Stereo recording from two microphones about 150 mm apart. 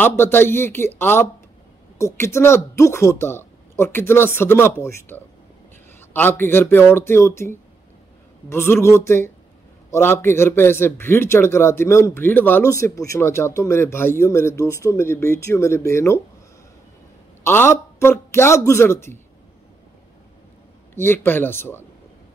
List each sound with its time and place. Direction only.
0.0 s a man's voice: 15° left (ahead or behind)
17.4 s a man's voice: 15° left (ahead or behind)
20.9 s a man's voice: 15° left (ahead or behind)